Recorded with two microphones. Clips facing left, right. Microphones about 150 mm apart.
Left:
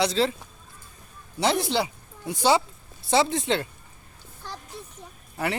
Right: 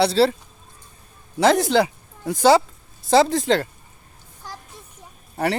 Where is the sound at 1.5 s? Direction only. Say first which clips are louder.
Right 7 dB; 45° right (ahead or behind).